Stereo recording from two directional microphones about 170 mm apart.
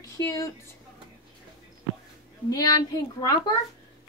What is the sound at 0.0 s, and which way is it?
Speech, 20° left (ahead or behind).